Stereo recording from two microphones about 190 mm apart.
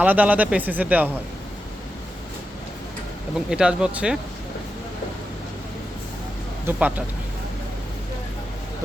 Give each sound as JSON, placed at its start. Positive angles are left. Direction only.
{"t": 0.0, "sound": "speech", "side_deg": -10}
{"t": 3.5, "sound": "speech", "side_deg": -5}
{"t": 6.7, "sound": "speech", "side_deg": -10}